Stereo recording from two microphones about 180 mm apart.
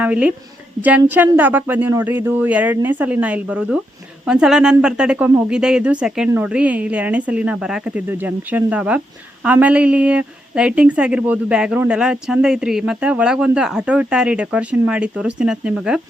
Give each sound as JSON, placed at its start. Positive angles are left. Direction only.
{"t": 0.0, "sound": "a woman's voice", "side_deg": -5}